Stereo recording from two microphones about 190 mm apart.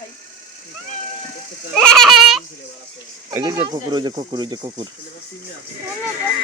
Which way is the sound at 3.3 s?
15° right (ahead or behind).